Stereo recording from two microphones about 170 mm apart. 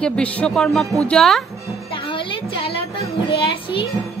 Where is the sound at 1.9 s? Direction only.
30° left (ahead or behind).